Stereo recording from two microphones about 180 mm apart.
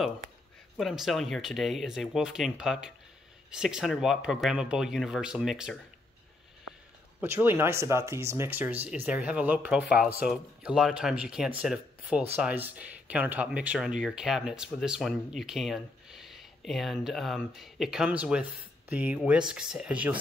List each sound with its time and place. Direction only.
0.7 s speech: centre (ahead or behind)
7.2 s speech: 15° right (ahead or behind)